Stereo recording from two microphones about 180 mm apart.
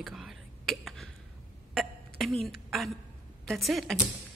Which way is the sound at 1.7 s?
Centre (ahead or behind).